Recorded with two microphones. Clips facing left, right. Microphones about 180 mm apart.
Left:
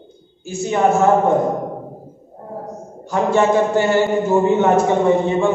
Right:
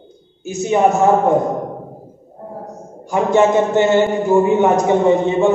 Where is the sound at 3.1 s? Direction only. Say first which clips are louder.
Right 2 dB; 20° right (ahead or behind).